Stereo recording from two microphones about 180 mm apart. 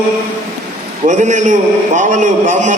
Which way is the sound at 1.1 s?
40° right (ahead or behind).